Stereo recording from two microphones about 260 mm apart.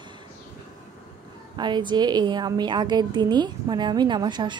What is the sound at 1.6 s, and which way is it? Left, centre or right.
A woman's voice, centre.